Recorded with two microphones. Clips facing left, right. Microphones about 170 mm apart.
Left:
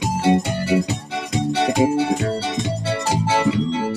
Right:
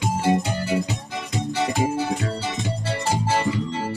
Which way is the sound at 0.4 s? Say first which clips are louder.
Left 4 dB; 70° left (ahead or behind).